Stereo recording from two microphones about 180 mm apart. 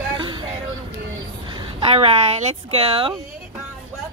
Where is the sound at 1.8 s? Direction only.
30° right (ahead or behind).